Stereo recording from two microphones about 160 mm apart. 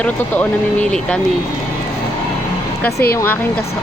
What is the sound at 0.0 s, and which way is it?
A woman's voice, 10° left (ahead or behind).